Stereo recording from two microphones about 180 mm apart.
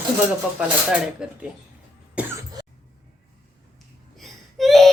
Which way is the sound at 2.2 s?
5° right (ahead or behind).